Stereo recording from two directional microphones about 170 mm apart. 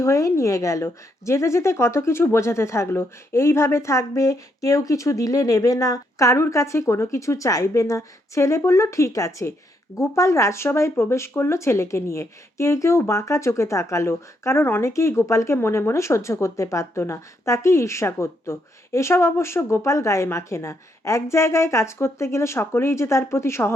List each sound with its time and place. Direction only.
0.0 s speech: 15° left (ahead or behind)